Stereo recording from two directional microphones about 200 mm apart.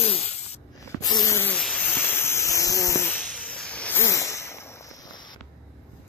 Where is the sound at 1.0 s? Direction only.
20° left (ahead or behind).